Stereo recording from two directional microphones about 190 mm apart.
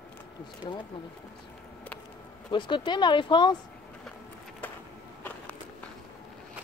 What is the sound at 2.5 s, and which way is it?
Speech, 25° left (ahead or behind).